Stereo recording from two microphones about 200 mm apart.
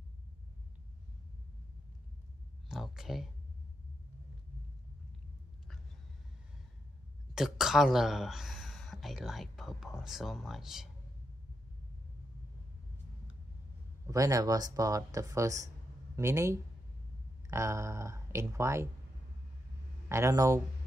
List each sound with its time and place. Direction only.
2.7 s speech: centre (ahead or behind)
7.3 s speech: centre (ahead or behind)
14.0 s speech: 15° right (ahead or behind)
20.1 s speech: 15° right (ahead or behind)